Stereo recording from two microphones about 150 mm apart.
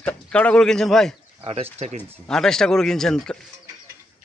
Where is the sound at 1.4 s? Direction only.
40° right (ahead or behind).